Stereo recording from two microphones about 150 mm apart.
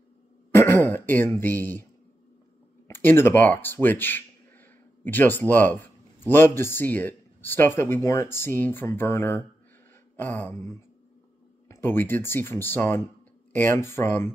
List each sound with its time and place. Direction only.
0.5 s speech: 15° left (ahead or behind)
2.9 s a man's voice: 15° left (ahead or behind)